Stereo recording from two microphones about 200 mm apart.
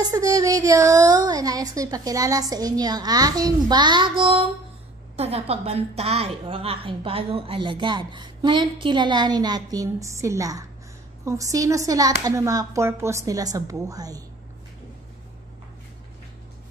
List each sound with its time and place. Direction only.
0.0 s a woman's voice: 15° right (ahead or behind)